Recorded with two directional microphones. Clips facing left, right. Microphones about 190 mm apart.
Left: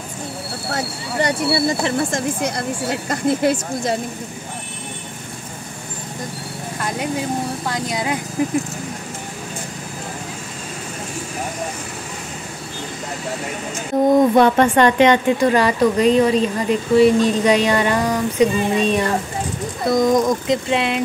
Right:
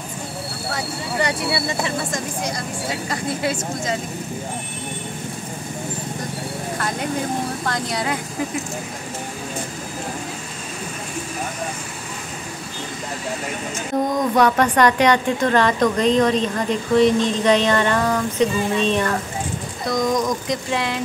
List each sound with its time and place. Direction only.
1.2 s speech: 45° left (ahead or behind)
7.6 s speech: 10° left (ahead or behind)
14.1 s speech: 25° left (ahead or behind)
19.9 s speech: 25° left (ahead or behind)